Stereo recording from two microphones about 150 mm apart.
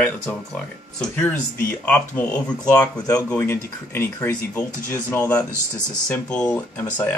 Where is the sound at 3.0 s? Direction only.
20° left (ahead or behind).